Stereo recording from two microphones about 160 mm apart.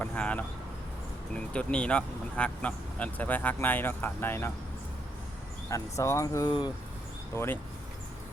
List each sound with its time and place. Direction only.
0.0 s speech: 10° left (ahead or behind)
5.6 s speech: 20° left (ahead or behind)
7.3 s speech: 15° left (ahead or behind)